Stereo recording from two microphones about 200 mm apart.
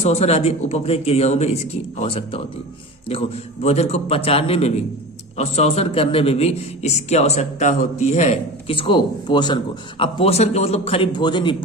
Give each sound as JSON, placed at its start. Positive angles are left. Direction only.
{"t": 0.0, "sound": "a man's voice", "side_deg": 30}